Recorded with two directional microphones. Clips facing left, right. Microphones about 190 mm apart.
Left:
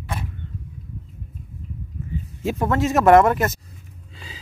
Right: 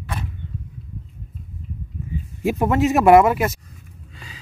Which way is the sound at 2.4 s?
15° right (ahead or behind).